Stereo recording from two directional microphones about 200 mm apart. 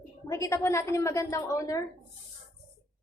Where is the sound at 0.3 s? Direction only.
15° left (ahead or behind).